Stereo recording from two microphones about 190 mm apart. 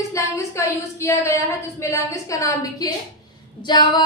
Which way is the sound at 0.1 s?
15° left (ahead or behind).